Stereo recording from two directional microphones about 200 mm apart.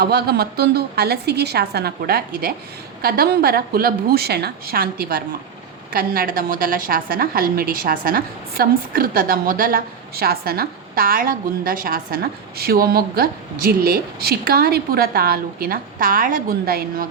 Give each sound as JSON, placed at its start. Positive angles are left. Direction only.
{"t": 0.0, "sound": "a woman's voice", "side_deg": -55}